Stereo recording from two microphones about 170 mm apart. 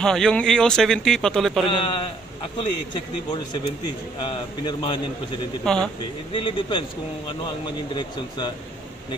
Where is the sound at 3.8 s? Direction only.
25° left (ahead or behind).